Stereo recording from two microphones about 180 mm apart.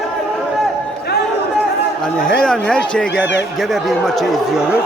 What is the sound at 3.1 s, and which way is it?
Speech, 80° left.